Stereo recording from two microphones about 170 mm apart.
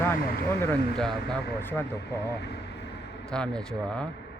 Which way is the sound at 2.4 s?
80° left.